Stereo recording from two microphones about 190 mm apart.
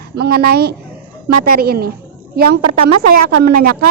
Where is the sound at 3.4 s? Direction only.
50° right (ahead or behind).